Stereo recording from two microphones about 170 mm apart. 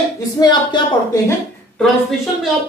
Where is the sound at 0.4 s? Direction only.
25° left (ahead or behind).